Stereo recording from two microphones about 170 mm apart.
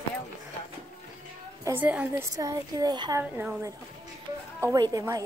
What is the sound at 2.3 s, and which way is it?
Speech, 20° right (ahead or behind).